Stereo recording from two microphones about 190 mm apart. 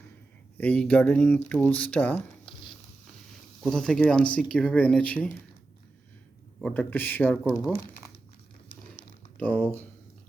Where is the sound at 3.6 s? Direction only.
5° left (ahead or behind).